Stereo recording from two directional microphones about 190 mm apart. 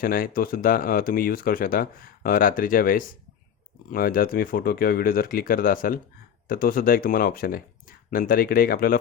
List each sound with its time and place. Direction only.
0.0 s speech: 50° left (ahead or behind)